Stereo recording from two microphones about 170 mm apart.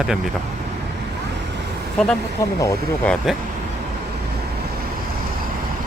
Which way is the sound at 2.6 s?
20° left (ahead or behind).